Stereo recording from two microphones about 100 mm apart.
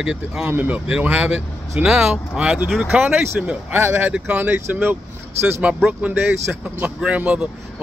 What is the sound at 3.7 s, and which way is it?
Speech, 20° right (ahead or behind).